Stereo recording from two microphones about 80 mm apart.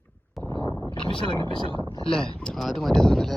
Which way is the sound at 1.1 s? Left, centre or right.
Left.